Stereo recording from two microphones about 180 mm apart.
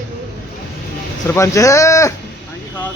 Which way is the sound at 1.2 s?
15° left (ahead or behind).